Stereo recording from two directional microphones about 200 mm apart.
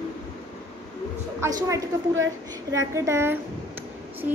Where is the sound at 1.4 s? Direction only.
15° right (ahead or behind).